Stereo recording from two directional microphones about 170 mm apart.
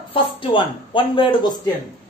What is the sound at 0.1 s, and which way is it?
A woman's voice, 30° left (ahead or behind).